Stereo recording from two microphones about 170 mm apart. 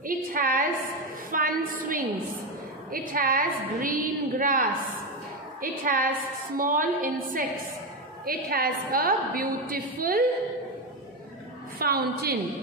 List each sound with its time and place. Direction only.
0.0 s a sound: 55° right (ahead or behind)
1.3 s a woman's voice: 55° right (ahead or behind)
11.8 s a woman's voice: 65° right (ahead or behind)